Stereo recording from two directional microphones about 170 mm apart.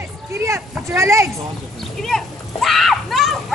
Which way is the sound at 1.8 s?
Centre (ahead or behind).